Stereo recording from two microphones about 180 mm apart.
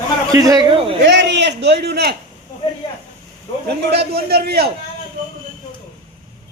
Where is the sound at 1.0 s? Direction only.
75° right (ahead or behind).